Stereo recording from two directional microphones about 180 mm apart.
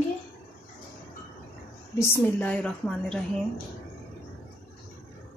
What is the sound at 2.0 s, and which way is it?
A woman's voice, 10° left (ahead or behind).